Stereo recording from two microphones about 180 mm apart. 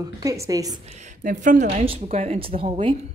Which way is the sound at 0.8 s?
40° right (ahead or behind).